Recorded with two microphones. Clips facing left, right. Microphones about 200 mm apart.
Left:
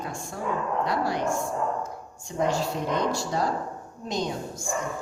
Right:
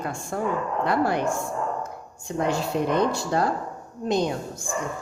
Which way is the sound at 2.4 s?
60° right (ahead or behind).